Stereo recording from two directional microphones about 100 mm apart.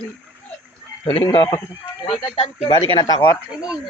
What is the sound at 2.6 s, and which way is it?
Speech, 75° left (ahead or behind).